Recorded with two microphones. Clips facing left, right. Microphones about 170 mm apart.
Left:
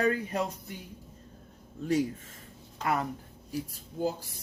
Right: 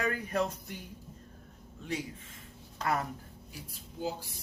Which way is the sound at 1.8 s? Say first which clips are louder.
Left 9 dB; 40° left (ahead or behind).